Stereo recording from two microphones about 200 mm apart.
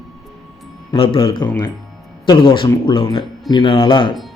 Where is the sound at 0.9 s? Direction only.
25° left (ahead or behind).